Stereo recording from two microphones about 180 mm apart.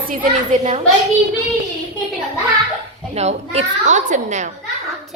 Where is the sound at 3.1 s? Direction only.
35° right (ahead or behind).